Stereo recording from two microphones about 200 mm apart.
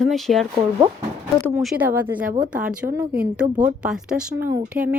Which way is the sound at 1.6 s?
5° right (ahead or behind).